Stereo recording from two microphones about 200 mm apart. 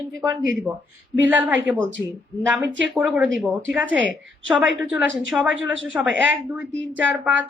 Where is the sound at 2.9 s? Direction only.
5° right (ahead or behind).